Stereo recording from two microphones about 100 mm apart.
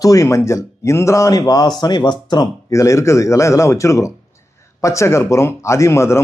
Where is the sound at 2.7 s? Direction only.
30° left (ahead or behind).